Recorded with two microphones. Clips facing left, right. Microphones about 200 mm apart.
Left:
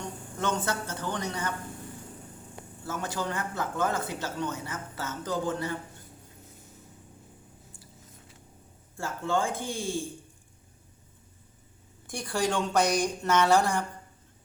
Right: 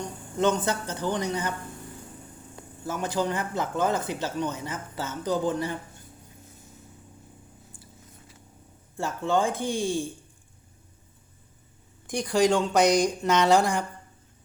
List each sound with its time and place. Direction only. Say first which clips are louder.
0.3 s speech: right 6 dB; 20° right (ahead or behind)
2.8 s speech: right 5 dB; 15° right (ahead or behind)
9.0 s speech: right 4 dB; 20° right (ahead or behind)
12.0 s speech: right 7 dB; 15° right (ahead or behind)